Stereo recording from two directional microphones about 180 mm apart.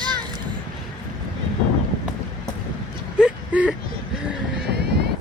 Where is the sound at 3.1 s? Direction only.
5° right (ahead or behind).